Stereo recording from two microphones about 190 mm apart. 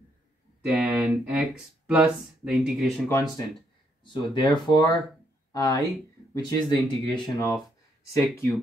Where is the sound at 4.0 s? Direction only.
25° left (ahead or behind).